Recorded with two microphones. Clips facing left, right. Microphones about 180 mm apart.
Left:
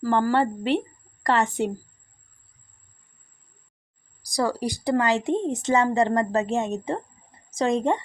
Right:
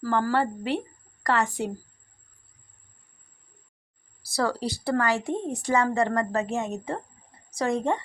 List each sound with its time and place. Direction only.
0.0 s a woman's voice: 15° left (ahead or behind)
4.2 s a woman's voice: 15° left (ahead or behind)